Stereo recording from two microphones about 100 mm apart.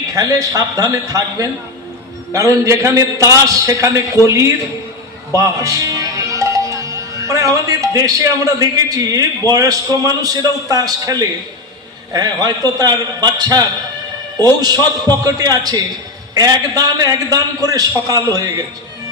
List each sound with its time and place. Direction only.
0.1 s a man's voice: 35° right (ahead or behind)
15.2 s a man's voice: 35° right (ahead or behind)